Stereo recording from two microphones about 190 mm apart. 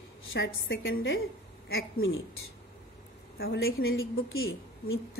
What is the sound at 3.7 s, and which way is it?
A woman's voice, 90° left.